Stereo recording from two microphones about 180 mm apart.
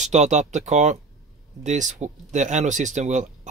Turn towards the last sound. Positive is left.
turn(degrees=-40)  # may be behind; listen again after turning